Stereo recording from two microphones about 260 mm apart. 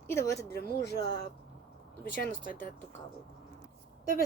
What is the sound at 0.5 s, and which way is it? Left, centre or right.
Speech, left.